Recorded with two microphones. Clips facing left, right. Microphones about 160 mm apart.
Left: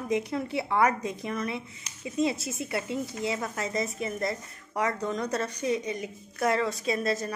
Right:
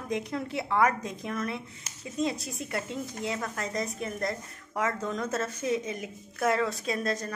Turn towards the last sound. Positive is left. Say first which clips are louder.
# left 2 dB
turn(degrees=5)  # may be behind; listen again after turning